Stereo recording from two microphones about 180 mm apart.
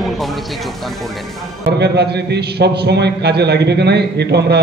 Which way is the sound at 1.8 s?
65° right (ahead or behind).